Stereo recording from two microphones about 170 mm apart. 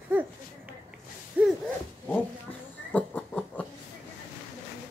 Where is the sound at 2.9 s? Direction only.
10° left (ahead or behind).